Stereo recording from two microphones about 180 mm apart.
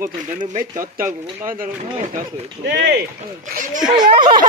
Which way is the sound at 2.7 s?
70° right (ahead or behind).